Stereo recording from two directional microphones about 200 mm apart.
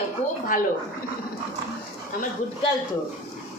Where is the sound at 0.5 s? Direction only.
40° left (ahead or behind).